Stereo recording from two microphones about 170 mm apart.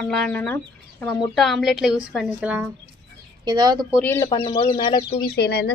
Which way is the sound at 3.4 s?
25° right (ahead or behind).